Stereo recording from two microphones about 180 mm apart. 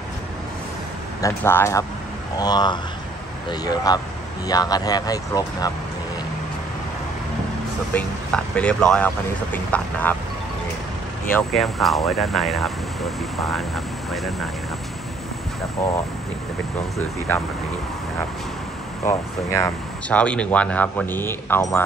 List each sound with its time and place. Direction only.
1.2 s speech: 15° left (ahead or behind)
7.9 s speech: 5° left (ahead or behind)
11.5 s speech: centre (ahead or behind)
19.0 s speech: 15° left (ahead or behind)